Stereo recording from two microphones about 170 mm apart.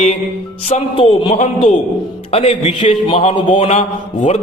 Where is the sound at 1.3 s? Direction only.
45° left (ahead or behind).